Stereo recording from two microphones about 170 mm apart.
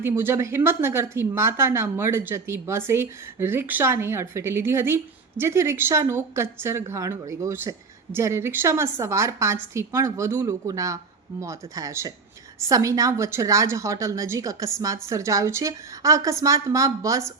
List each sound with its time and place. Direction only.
0.0 s a woman's voice: 15° right (ahead or behind)